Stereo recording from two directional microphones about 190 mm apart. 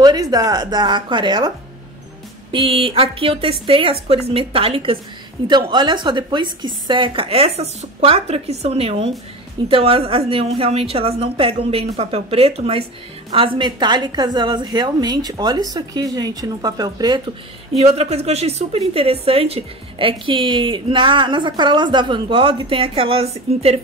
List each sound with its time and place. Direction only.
0.0 s a woman's voice: 20° right (ahead or behind)
2.5 s a woman's voice: 30° right (ahead or behind)
17.7 s a woman's voice: 35° right (ahead or behind)